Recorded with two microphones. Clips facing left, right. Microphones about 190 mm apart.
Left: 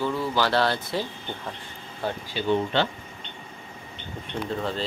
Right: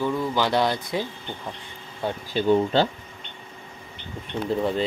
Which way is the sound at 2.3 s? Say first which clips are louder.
Right 4 dB; 40° right (ahead or behind).